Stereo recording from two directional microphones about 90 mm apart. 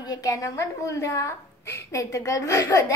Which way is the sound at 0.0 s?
40° left (ahead or behind).